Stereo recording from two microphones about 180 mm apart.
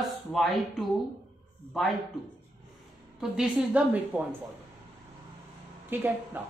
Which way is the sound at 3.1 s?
5° right (ahead or behind).